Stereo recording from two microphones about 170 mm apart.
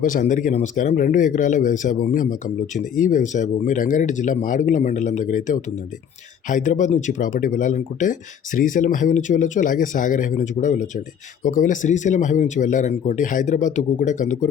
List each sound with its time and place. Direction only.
0.0 s speech: 50° left (ahead or behind)